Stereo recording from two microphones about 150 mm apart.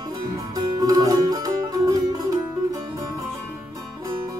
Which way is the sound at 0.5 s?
25° right (ahead or behind).